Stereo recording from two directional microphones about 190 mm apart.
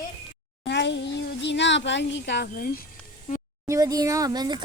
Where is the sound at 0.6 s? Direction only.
65° left (ahead or behind); by 2.8 s 50° left (ahead or behind).